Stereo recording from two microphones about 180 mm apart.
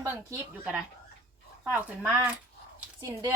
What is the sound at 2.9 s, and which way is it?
Speech, 20° right (ahead or behind).